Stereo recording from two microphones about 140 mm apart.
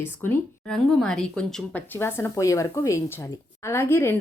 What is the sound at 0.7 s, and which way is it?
Speech, 5° left (ahead or behind).